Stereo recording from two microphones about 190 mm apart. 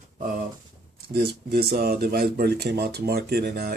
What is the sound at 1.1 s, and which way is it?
Speech, 55° right (ahead or behind).